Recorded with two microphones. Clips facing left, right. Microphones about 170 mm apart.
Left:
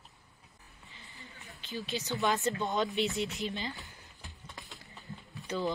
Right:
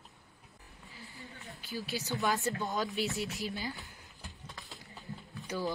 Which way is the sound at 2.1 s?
Centre (ahead or behind).